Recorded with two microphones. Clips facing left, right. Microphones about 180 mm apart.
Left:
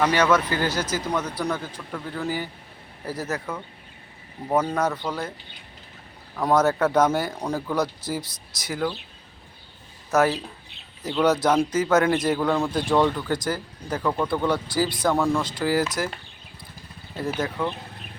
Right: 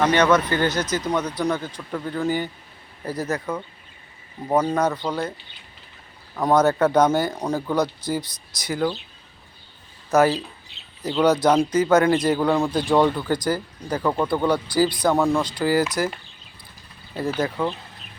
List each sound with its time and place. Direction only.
0.0 s speech: 5° left (ahead or behind)
4.8 s speech: centre (ahead or behind)
6.3 s speech: centre (ahead or behind)
10.1 s speech: centre (ahead or behind)
10.7 s bird: 55° left (ahead or behind)
11.4 s speech: 5° left (ahead or behind)
15.1 s speech: 15° right (ahead or behind)
15.4 s speech: centre (ahead or behind)
17.2 s speech: centre (ahead or behind)